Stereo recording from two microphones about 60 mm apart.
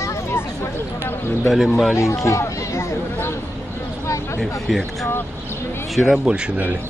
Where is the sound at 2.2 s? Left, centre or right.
Left.